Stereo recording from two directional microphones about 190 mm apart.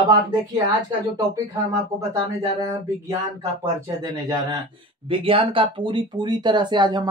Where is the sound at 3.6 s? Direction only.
20° right (ahead or behind).